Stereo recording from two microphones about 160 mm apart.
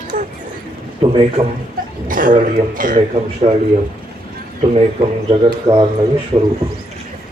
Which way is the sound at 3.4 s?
40° right (ahead or behind).